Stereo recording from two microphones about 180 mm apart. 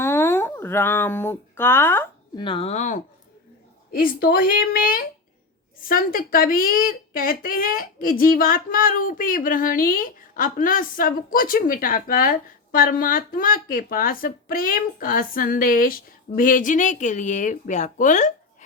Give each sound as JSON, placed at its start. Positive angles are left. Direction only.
{"t": 0.0, "sound": "a sound", "side_deg": 15}
{"t": 2.4, "sound": "speech", "side_deg": 30}
{"t": 3.9, "sound": "a woman's voice", "side_deg": 55}